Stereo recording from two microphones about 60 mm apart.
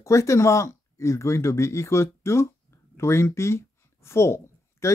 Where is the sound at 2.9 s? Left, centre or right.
Left.